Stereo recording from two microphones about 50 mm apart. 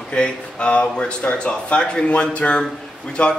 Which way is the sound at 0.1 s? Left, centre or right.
Left.